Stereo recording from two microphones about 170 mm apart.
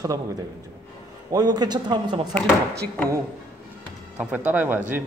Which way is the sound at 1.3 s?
20° right (ahead or behind).